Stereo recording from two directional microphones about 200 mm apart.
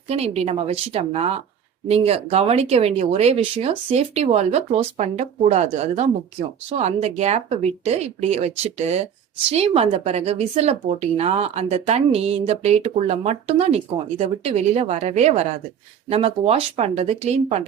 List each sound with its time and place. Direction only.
0.1 s speech: 30° right (ahead or behind)